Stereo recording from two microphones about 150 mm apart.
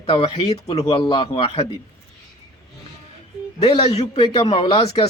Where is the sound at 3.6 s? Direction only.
40° left (ahead or behind).